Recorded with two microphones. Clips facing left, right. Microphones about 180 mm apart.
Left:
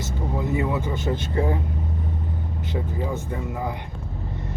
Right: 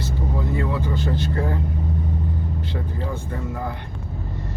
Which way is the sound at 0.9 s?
20° left (ahead or behind).